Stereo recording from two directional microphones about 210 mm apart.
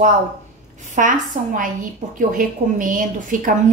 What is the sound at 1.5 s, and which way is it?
A woman's voice, 40° right (ahead or behind).